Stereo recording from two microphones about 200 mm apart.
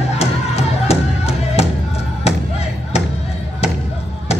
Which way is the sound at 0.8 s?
30° left (ahead or behind).